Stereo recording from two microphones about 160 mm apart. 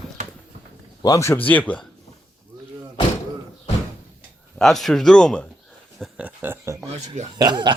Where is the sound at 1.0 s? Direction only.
20° left (ahead or behind).